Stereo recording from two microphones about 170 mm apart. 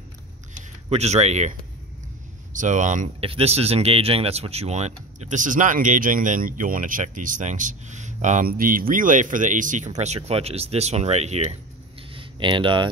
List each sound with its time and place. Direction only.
0.6 s speech: 40° right (ahead or behind)
2.5 s speech: 45° right (ahead or behind)
3.3 s speech: 35° right (ahead or behind)
12.1 s a sound: 30° right (ahead or behind)